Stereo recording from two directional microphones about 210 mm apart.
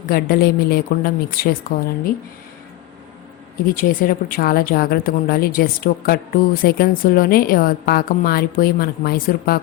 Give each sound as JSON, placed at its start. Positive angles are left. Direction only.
{"t": 0.1, "sound": "speech", "side_deg": 45}
{"t": 3.8, "sound": "speech", "side_deg": 40}